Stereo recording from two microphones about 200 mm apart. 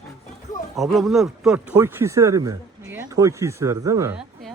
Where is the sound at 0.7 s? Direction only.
Centre (ahead or behind); by 4.1 s 15° right (ahead or behind).